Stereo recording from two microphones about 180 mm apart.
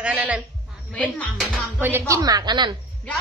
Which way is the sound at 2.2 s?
20° right (ahead or behind).